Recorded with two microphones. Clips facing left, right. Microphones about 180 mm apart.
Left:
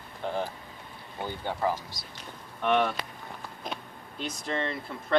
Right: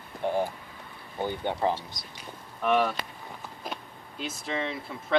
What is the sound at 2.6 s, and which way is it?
Speech, centre (ahead or behind).